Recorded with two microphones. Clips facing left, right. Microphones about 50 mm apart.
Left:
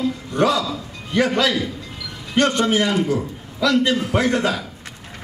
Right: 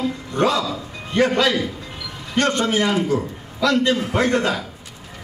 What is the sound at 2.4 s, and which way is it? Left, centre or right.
Speech, right.